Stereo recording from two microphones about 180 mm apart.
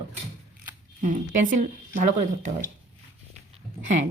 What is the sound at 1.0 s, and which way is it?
Speech, 45° right (ahead or behind).